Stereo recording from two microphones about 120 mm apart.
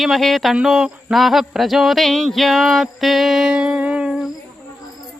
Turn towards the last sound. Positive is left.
turn(degrees=-5)  # may be behind; listen again after turning